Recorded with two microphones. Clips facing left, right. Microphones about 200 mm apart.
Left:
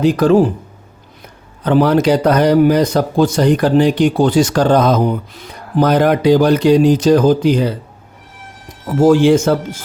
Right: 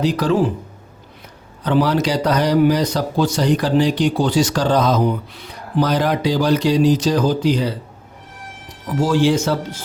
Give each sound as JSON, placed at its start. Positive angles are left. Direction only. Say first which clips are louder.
{"t": 0.0, "sound": "speech", "louder": "left 6 dB", "side_deg": 50}
{"t": 1.6, "sound": "speech", "louder": "left 5 dB", "side_deg": 50}
{"t": 9.0, "sound": "speech", "louder": "left 7 dB", "side_deg": 50}